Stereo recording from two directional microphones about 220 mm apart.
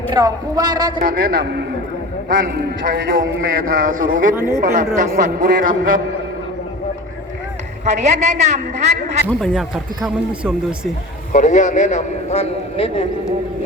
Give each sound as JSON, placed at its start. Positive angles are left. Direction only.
{"t": 0.1, "sound": "speech", "side_deg": -15}
{"t": 1.0, "sound": "a man's voice", "side_deg": -40}
{"t": 7.9, "sound": "a woman's voice", "side_deg": -30}
{"t": 9.2, "sound": "speech", "side_deg": 0}
{"t": 11.3, "sound": "a man's voice", "side_deg": 35}